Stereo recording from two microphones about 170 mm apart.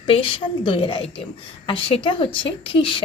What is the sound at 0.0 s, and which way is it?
Speech, 30° left (ahead or behind).